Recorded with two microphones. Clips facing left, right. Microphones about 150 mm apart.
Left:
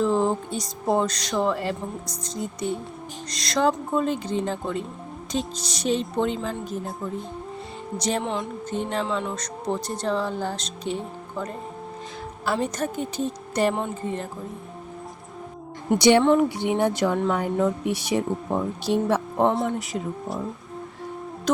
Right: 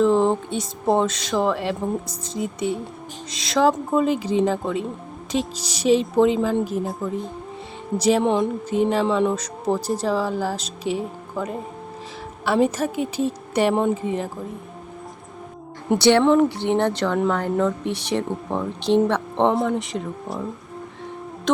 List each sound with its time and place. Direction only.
0.0 s music: centre (ahead or behind)
0.5 s speech: centre (ahead or behind)
8.2 s a sound: 20° right (ahead or behind)
8.7 s speech: 5° right (ahead or behind)
16.0 s speech: 15° left (ahead or behind)